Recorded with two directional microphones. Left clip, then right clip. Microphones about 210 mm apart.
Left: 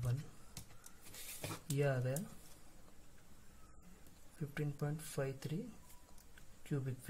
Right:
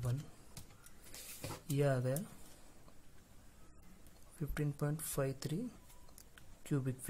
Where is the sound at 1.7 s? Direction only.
20° right (ahead or behind).